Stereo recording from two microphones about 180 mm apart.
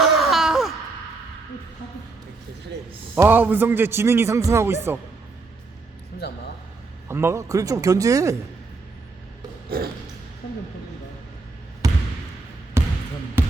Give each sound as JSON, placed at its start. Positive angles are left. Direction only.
{"t": 0.0, "sound": "wail", "side_deg": 0}
{"t": 3.2, "sound": "a man's voice", "side_deg": -10}
{"t": 6.2, "sound": "a man's voice", "side_deg": 65}
{"t": 7.1, "sound": "a man's voice", "side_deg": -15}
{"t": 9.6, "sound": "a sound", "side_deg": -60}
{"t": 11.8, "sound": "trickle", "side_deg": -20}
{"t": 12.8, "sound": "basketball bounce", "side_deg": -15}